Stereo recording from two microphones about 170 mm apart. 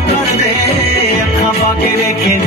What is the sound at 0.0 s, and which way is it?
Music, 70° left (ahead or behind).